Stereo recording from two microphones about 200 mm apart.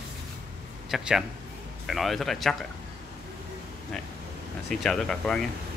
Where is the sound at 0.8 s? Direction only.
Centre (ahead or behind).